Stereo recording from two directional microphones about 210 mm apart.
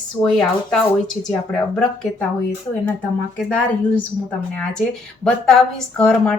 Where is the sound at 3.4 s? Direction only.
5° left (ahead or behind).